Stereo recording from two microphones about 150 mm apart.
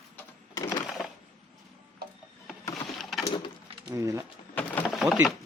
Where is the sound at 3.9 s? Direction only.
20° right (ahead or behind).